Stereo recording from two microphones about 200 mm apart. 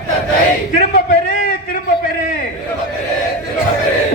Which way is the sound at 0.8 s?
45° left (ahead or behind).